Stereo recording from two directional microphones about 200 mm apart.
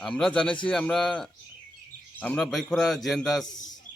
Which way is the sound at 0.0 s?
5° left (ahead or behind).